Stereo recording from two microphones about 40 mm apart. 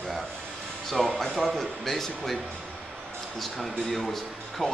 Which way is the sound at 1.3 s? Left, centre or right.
Centre.